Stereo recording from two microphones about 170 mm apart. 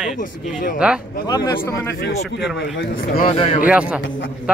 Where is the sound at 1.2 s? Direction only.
25° left (ahead or behind).